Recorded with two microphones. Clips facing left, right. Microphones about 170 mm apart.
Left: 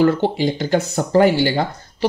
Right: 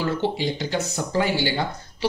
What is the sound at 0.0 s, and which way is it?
Speech, 50° left (ahead or behind).